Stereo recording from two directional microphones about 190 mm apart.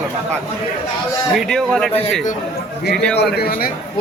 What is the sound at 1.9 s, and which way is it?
Speech, 30° left (ahead or behind).